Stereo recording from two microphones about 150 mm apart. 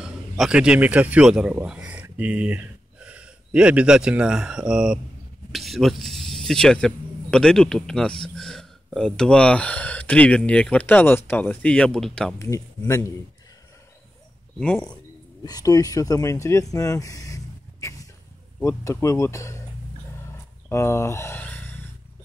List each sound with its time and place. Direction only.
0.0 s a man's voice: 5° right (ahead or behind)
12.4 s speech: 20° left (ahead or behind)
15.4 s speech: 25° left (ahead or behind)
20.6 s speech: 15° left (ahead or behind)